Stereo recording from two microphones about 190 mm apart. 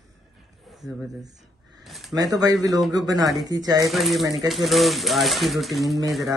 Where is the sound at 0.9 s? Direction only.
15° right (ahead or behind).